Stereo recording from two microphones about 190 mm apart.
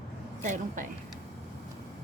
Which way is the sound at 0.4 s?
45° right (ahead or behind).